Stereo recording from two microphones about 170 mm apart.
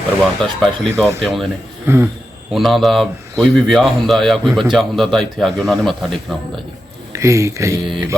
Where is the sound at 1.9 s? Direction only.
15° right (ahead or behind).